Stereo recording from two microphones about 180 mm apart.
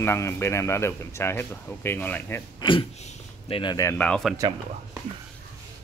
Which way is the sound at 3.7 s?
10° left (ahead or behind).